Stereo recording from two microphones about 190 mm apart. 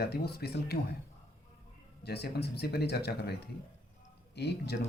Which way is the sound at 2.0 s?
60° left (ahead or behind).